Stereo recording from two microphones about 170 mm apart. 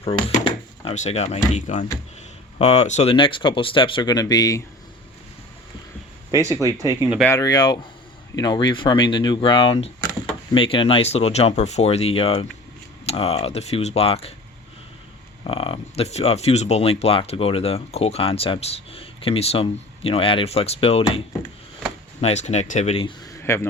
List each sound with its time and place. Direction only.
0.0 s speech: 35° left (ahead or behind)
6.6 s speech: 20° right (ahead or behind)
7.3 s speech: 20° left (ahead or behind); by 14.3 s 35° left (ahead or behind)
15.4 s speech: 35° left (ahead or behind)
22.2 s speech: 40° left (ahead or behind)
23.3 s a sound: 15° left (ahead or behind)